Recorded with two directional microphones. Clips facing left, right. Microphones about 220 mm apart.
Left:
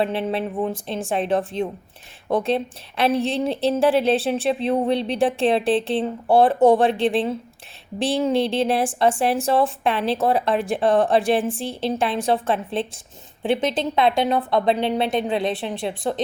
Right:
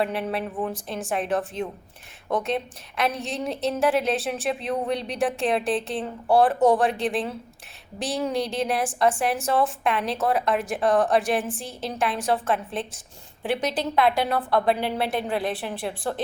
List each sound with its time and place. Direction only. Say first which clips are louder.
0.0 s a woman's voice: left 4 dB; 25° left (ahead or behind)